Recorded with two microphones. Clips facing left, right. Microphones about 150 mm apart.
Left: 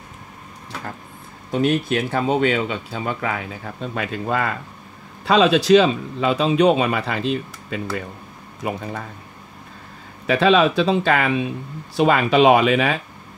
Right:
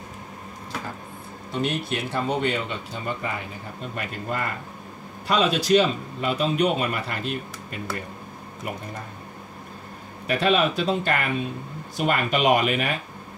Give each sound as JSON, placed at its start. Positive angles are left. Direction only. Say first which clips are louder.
{"t": 1.5, "sound": "speech", "louder": "left 7 dB", "side_deg": 50}
{"t": 2.2, "sound": "speech", "louder": "left 6 dB", "side_deg": 75}
{"t": 8.6, "sound": "speech", "louder": "left 7 dB", "side_deg": 90}
{"t": 10.2, "sound": "speech", "louder": "left 6 dB", "side_deg": 90}